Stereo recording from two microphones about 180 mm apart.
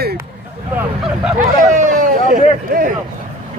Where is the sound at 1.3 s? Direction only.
45° right (ahead or behind).